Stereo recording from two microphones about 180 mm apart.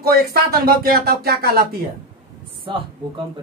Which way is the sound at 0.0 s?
55° right (ahead or behind).